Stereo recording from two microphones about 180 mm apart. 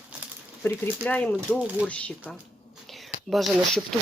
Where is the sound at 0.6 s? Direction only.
10° left (ahead or behind).